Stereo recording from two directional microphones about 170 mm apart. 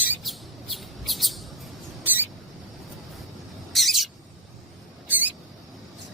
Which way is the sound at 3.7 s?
Centre (ahead or behind).